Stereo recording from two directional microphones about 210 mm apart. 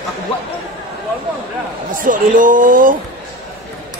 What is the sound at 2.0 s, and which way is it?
Speech, 40° right (ahead or behind).